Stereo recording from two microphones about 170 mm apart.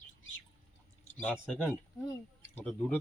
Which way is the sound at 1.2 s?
5° left (ahead or behind).